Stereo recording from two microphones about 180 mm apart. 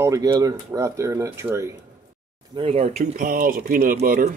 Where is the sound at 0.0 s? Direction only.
15° right (ahead or behind).